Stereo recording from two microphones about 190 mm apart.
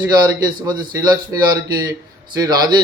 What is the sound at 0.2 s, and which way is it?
A man's voice, 20° right (ahead or behind).